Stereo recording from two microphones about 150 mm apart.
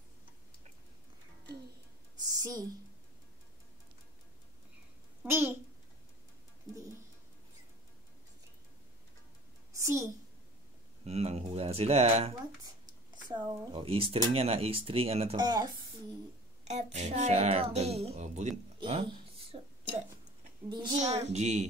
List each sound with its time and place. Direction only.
2.1 s a sound: 25° right (ahead or behind)
5.2 s a child's voice: 15° right (ahead or behind)
9.7 s a sound: 20° right (ahead or behind)
11.1 s speech: 45° right (ahead or behind)
15.3 s speech: 30° right (ahead or behind)
16.6 s speech: 50° right (ahead or behind)
18.8 s speech: 35° right (ahead or behind)
21.0 s speech: 50° right (ahead or behind)